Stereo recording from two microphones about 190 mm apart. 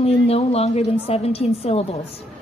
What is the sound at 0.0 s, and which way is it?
A woman's voice, 30° left (ahead or behind).